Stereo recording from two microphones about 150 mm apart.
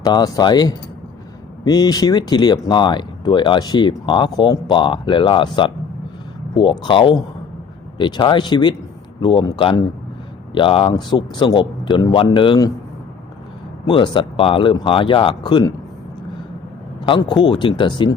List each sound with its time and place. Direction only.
0.0 s speech: 25° left (ahead or behind)
13.8 s speech: 30° left (ahead or behind)
17.1 s speech: 30° left (ahead or behind)